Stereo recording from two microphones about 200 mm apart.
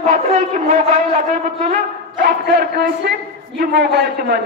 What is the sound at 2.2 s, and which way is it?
A woman's voice, 50° right (ahead or behind).